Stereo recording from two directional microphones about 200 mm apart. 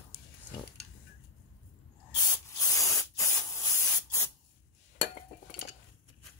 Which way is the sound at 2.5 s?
15° left (ahead or behind).